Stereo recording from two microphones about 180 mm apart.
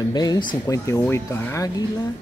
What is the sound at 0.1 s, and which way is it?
Speech, 20° left (ahead or behind).